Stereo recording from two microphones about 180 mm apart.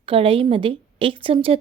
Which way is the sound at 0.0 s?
30° right (ahead or behind).